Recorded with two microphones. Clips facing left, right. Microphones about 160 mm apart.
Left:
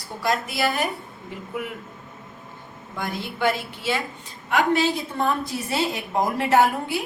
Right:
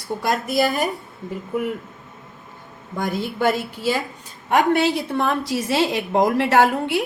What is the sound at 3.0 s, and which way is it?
A woman's voice, 40° right (ahead or behind).